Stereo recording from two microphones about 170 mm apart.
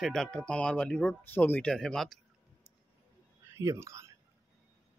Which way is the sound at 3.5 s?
15° right (ahead or behind).